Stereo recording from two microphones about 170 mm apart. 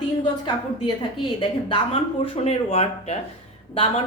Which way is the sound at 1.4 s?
30° left (ahead or behind).